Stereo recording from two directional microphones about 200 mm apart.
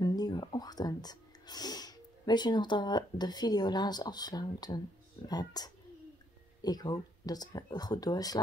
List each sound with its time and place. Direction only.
0.0 s speech: 20° left (ahead or behind)